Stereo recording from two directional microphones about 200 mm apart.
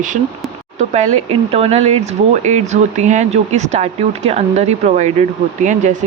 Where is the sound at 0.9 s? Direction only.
35° right (ahead or behind).